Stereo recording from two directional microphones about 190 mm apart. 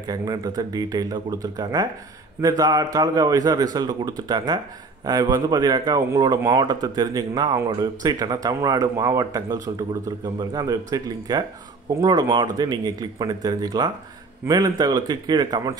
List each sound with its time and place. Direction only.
0.0 s speech: 20° right (ahead or behind)